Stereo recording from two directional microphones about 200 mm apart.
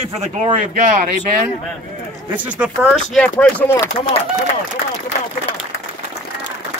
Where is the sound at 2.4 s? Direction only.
5° right (ahead or behind).